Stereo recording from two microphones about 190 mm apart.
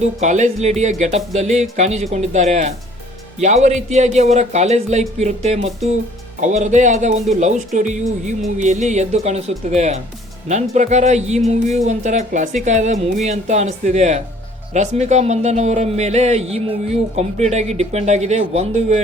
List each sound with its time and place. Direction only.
0.0 s speech: 35° right (ahead or behind)